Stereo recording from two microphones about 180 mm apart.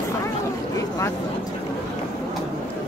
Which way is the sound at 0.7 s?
20° left (ahead or behind).